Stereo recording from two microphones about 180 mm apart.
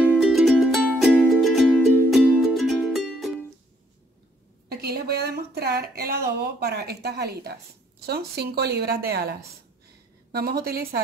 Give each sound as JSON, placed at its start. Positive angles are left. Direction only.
{"t": 0.2, "sound": "music", "side_deg": 0}
{"t": 4.6, "sound": "a sound", "side_deg": -60}
{"t": 8.0, "sound": "a woman's voice", "side_deg": -60}